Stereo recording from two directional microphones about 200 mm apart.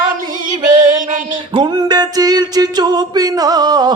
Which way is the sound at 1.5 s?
25° right (ahead or behind).